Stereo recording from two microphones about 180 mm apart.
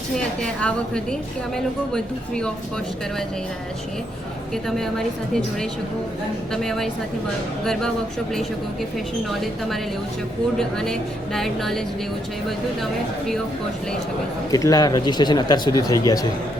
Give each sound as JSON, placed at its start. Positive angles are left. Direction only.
{"t": 0.4, "sound": "a woman's voice", "side_deg": 5}
{"t": 4.5, "sound": "a woman's voice", "side_deg": 0}
{"t": 9.4, "sound": "a woman's voice", "side_deg": 0}
{"t": 14.5, "sound": "speech", "side_deg": 20}